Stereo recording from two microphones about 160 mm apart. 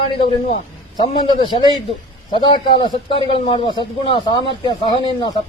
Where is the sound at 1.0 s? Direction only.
25° left (ahead or behind).